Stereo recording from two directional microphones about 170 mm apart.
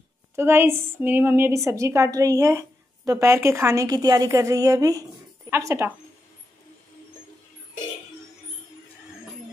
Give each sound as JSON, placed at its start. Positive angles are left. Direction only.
{"t": 0.4, "sound": "a woman's voice", "side_deg": -15}